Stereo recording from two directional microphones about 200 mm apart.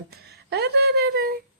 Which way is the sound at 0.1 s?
55° right (ahead or behind).